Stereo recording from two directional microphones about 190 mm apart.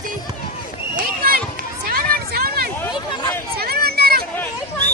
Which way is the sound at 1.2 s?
50° right (ahead or behind).